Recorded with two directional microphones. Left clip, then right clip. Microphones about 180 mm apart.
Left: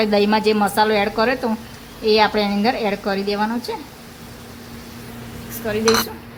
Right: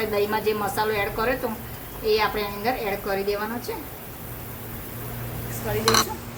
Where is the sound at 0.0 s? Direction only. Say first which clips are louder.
Left 7 dB; 55° left (ahead or behind).